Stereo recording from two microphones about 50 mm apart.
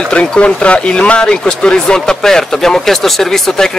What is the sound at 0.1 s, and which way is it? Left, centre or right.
Speech, left.